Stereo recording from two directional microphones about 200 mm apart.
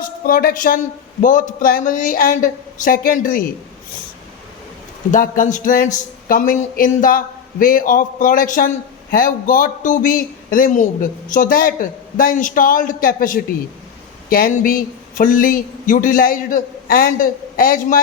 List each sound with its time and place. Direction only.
0.0 s a woman's voice: 45° left (ahead or behind)
5.1 s a man's voice: 40° left (ahead or behind)